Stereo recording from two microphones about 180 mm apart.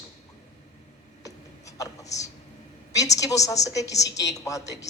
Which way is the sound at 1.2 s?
20° left (ahead or behind).